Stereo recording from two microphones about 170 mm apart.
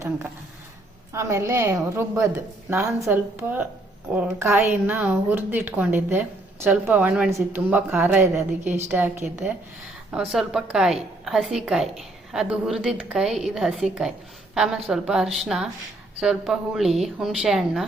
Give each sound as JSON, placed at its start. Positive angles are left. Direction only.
{"t": 1.1, "sound": "a woman's voice", "side_deg": -15}